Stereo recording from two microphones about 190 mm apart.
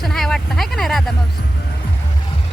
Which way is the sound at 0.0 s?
Centre (ahead or behind).